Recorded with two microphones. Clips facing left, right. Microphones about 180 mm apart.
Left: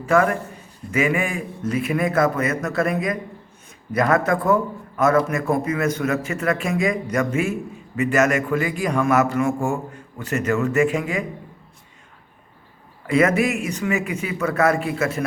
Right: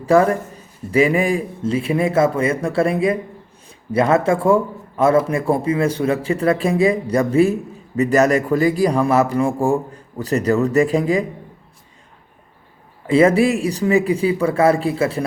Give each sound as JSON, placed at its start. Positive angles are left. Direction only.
{"t": 0.0, "sound": "a man's voice", "side_deg": -35}
{"t": 13.1, "sound": "a man's voice", "side_deg": -30}